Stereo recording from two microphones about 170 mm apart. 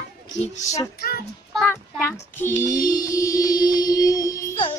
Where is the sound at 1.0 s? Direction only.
65° left (ahead or behind).